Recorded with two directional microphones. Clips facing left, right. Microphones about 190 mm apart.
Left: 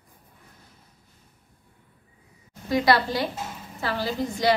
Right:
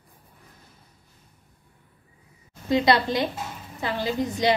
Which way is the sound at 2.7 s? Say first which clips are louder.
Right 1 dB; 20° right (ahead or behind).